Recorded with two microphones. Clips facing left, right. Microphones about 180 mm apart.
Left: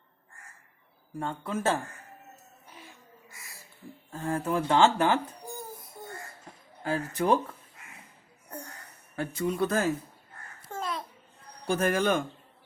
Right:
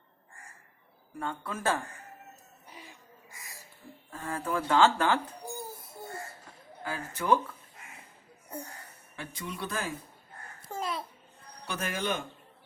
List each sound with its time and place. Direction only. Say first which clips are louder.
1.2 s speech: left 3 dB; 25° left (ahead or behind)
2.6 s music: right 1 dB; 10° right (ahead or behind)
4.1 s speech: left 4 dB; 30° left (ahead or behind)
5.5 s a sound: even; 10° right (ahead or behind)
6.8 s speech: left 3 dB; 35° left (ahead or behind)
9.1 s speech: left 11 dB; 45° left (ahead or behind)
10.7 s babbling: even; 10° right (ahead or behind)
11.6 s speech: left 8 dB; 50° left (ahead or behind)